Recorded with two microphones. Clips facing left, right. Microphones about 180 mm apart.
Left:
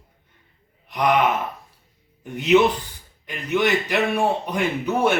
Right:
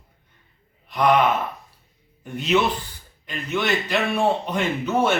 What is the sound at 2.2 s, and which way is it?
A man's voice, 15° left (ahead or behind).